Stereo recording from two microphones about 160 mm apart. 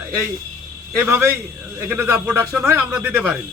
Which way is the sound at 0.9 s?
15° right (ahead or behind).